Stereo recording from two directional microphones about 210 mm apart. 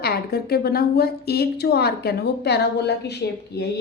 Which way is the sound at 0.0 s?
50° left (ahead or behind).